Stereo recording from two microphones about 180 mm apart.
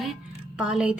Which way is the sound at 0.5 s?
5° right (ahead or behind).